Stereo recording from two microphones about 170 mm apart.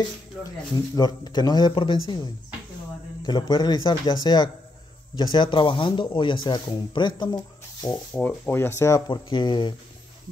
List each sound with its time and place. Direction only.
0.9 s speech: 25° left (ahead or behind)
3.3 s speech: 25° left (ahead or behind)
8.1 s speech: 10° left (ahead or behind); by 9.8 s 30° left (ahead or behind)